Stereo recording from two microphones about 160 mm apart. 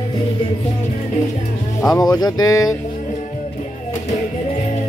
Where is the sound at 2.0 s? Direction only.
25° left (ahead or behind).